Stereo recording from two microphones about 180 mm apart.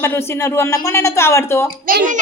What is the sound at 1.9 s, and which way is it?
Speech, 50° right (ahead or behind).